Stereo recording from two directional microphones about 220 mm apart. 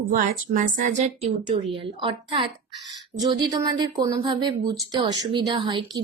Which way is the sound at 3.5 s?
15° right (ahead or behind).